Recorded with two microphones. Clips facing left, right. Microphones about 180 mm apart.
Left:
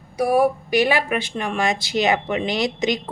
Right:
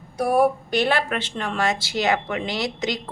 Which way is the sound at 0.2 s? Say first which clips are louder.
Left 1 dB; 10° left (ahead or behind).